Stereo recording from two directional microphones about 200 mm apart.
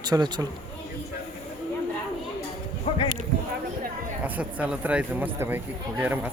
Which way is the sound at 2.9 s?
30° left (ahead or behind).